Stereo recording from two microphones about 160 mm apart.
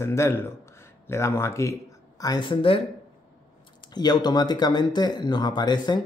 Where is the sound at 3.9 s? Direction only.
25° left (ahead or behind).